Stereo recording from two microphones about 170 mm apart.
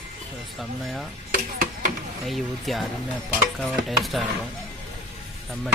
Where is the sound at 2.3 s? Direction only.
Centre (ahead or behind).